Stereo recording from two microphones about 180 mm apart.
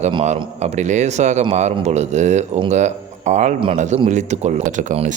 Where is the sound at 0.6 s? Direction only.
40° right (ahead or behind).